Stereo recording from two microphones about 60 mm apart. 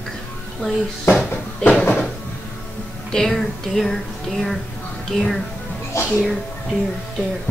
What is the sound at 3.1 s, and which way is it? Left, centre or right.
Speech, centre.